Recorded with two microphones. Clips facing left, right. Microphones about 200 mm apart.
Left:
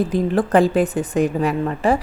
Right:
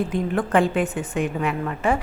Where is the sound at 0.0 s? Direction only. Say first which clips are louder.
Left 5 dB; 35° left (ahead or behind).